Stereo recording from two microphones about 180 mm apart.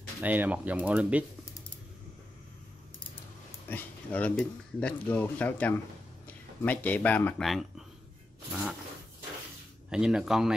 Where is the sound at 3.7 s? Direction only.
10° left (ahead or behind).